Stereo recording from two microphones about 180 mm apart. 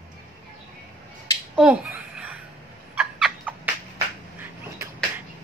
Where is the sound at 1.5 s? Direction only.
5° right (ahead or behind).